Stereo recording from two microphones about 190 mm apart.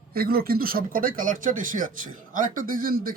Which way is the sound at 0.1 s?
50° right (ahead or behind).